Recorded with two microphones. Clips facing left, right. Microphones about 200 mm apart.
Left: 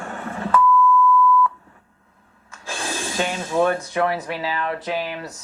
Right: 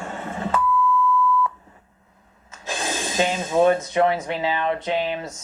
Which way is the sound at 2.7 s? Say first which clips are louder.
Right 1 dB; 20° right (ahead or behind).